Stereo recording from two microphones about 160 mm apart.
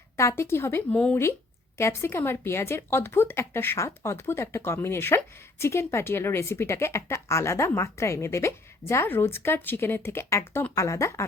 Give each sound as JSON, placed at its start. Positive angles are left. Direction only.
{"t": 0.2, "sound": "speech", "side_deg": 15}